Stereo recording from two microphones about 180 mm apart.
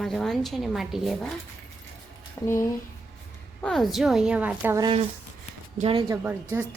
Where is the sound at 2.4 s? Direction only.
15° left (ahead or behind).